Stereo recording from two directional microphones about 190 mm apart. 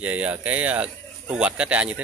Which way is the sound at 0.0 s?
5° right (ahead or behind).